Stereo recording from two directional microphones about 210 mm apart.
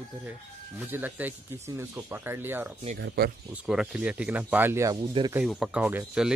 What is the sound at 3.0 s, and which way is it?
Speech, 50° right (ahead or behind).